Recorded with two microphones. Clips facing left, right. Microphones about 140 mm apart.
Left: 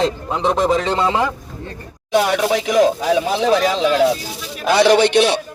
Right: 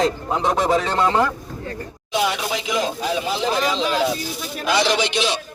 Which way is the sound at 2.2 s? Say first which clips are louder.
Left 6 dB; 60° left (ahead or behind).